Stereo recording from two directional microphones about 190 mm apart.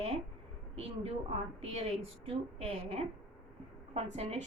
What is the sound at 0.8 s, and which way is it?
A woman's voice, 30° right (ahead or behind).